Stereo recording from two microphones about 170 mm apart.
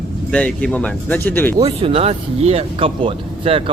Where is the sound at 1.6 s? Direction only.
35° right (ahead or behind).